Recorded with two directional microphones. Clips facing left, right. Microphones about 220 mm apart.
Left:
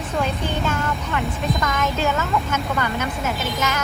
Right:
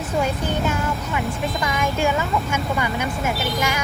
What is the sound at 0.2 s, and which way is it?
Speech, 10° right (ahead or behind).